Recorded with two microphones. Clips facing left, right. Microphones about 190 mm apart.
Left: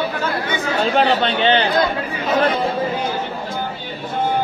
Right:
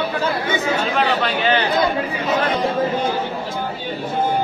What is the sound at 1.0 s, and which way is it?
Speech, 30° left (ahead or behind).